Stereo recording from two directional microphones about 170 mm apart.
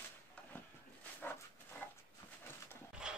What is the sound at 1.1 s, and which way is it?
Dog, 10° left (ahead or behind).